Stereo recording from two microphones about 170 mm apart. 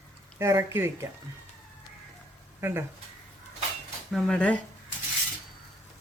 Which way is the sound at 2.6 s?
15° right (ahead or behind).